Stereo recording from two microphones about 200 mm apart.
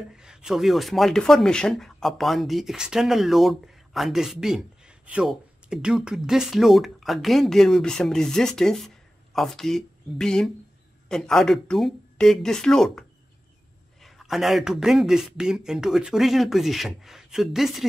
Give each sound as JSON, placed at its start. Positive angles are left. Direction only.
{"t": 0.1, "sound": "speech", "side_deg": -5}
{"t": 14.0, "sound": "speech", "side_deg": 0}